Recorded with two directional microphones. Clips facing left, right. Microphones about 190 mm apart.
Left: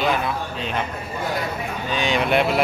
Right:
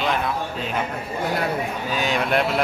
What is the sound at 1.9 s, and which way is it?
Speech, 5° right (ahead or behind).